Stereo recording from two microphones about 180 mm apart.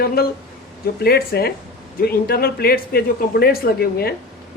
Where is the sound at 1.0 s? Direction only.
60° left (ahead or behind).